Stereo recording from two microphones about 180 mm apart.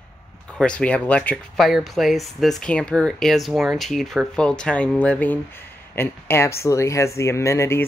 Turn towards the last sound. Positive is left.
turn(degrees=15)  # may be behind; listen again after turning